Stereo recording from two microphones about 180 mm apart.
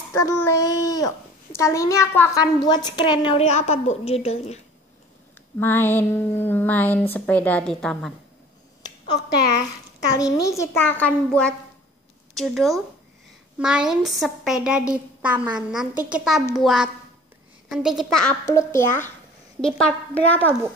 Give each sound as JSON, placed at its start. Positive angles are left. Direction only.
{"t": 0.1, "sound": "a child's voice", "side_deg": 15}
{"t": 5.6, "sound": "speech", "side_deg": 10}
{"t": 8.8, "sound": "a sound", "side_deg": 20}
{"t": 10.1, "sound": "a woman's voice", "side_deg": 20}
{"t": 18.4, "sound": "speech", "side_deg": 15}